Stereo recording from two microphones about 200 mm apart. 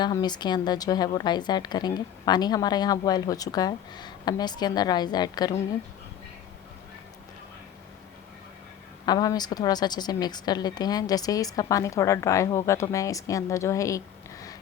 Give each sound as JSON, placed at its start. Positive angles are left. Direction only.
{"t": 0.0, "sound": "a woman's voice", "side_deg": 20}
{"t": 9.0, "sound": "a woman's voice", "side_deg": 20}